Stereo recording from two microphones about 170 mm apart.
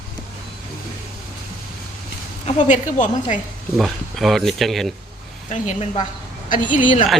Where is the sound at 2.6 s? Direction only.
45° left (ahead or behind).